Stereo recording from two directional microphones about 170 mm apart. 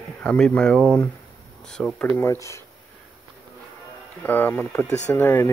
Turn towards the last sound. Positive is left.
turn(degrees=10)  # may be behind; listen again after turning